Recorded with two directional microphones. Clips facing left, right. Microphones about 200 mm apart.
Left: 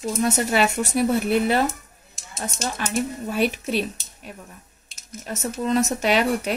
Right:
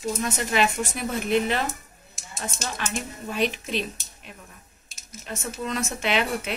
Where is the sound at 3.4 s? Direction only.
5° left (ahead or behind).